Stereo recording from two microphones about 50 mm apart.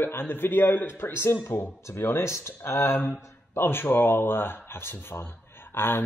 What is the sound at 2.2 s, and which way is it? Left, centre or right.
Speech, left.